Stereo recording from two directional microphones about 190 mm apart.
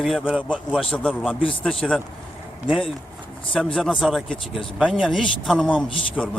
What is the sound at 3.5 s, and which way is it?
Speech, 5° left (ahead or behind).